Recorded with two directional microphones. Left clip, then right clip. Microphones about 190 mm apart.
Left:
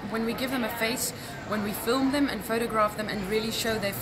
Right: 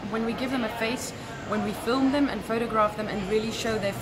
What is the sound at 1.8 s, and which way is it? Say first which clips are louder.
Speech: right 1 dB; 5° left (ahead or behind).